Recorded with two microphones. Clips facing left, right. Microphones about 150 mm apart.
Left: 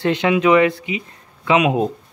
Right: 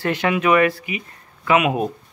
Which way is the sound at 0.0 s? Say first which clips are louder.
Left 3 dB; 20° left (ahead or behind).